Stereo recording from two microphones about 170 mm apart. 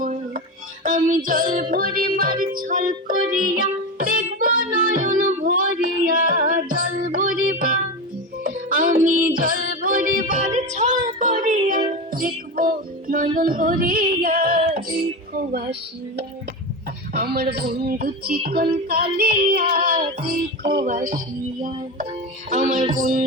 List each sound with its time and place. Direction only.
0.0 s music: 50° right (ahead or behind)
17.2 s music: 70° right (ahead or behind); by 23.2 s 50° right (ahead or behind)